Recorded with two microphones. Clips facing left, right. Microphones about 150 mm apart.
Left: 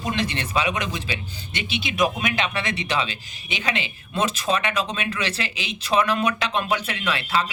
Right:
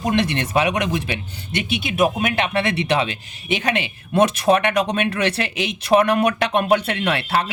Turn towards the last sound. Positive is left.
turn(degrees=-60)  # may be behind; listen again after turning